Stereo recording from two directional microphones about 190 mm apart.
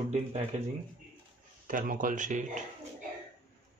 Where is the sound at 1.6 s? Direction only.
45° right (ahead or behind).